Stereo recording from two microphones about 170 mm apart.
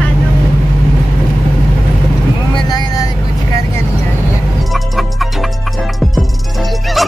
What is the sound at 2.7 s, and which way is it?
Vehicle, 20° left (ahead or behind).